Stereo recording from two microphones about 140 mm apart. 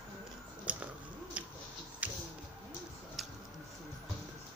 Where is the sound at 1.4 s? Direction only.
10° right (ahead or behind).